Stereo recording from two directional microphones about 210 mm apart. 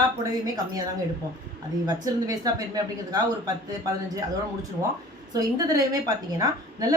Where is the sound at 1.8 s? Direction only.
15° right (ahead or behind).